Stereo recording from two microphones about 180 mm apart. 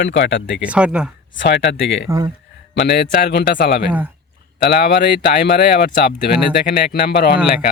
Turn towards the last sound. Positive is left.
turn(degrees=65)  # may be behind; listen again after turning